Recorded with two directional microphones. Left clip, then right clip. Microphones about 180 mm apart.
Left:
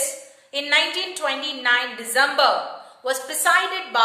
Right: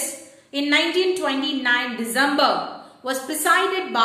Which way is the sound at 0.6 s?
25° left (ahead or behind).